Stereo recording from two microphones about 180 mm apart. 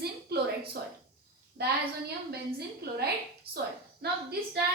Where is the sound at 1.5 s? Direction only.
60° right (ahead or behind).